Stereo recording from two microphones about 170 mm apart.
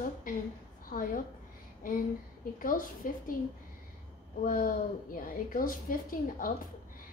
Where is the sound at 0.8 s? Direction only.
55° left (ahead or behind).